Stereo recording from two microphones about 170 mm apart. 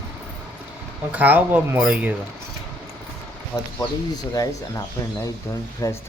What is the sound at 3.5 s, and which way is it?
Speech, 25° left (ahead or behind).